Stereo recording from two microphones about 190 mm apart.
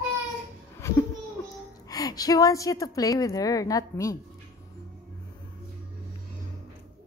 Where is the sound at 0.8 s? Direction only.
15° left (ahead or behind).